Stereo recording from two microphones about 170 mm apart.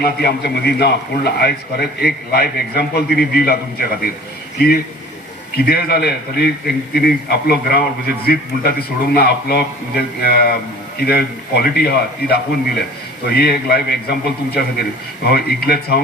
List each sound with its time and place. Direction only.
0.0 s a man's voice: 70° left (ahead or behind)
5.5 s a man's voice: 65° left (ahead or behind)